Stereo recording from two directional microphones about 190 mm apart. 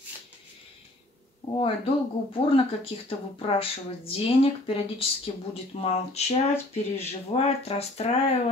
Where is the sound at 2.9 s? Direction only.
30° left (ahead or behind).